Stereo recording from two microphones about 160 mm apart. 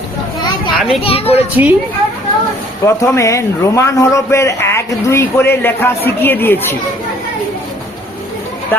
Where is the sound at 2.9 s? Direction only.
20° left (ahead or behind).